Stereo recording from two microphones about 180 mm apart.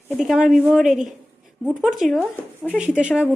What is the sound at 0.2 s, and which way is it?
A woman's voice, 5° right (ahead or behind).